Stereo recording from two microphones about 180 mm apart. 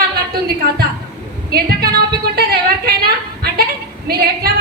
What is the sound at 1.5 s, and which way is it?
Speech, 60° right (ahead or behind).